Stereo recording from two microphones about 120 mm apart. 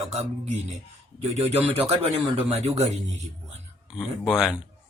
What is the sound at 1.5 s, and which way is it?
Speech, 60° right (ahead or behind).